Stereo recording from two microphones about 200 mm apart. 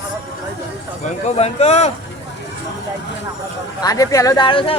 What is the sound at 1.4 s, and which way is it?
Speech, 35° left (ahead or behind).